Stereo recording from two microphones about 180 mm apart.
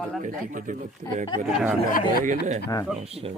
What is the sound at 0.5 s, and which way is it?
Speech, 45° right (ahead or behind).